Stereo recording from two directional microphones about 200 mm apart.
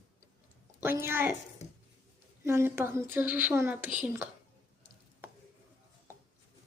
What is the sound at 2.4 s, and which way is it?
A woman's voice, 10° right (ahead or behind).